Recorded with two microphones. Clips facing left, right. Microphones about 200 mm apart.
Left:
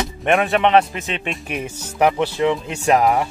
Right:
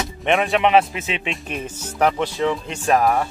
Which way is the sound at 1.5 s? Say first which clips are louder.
Left 2 dB; 10° left (ahead or behind).